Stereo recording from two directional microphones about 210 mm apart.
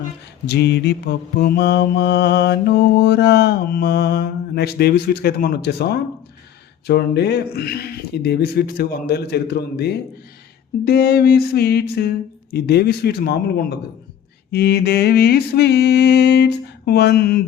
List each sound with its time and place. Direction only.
0.4 s mantra: 50° left (ahead or behind)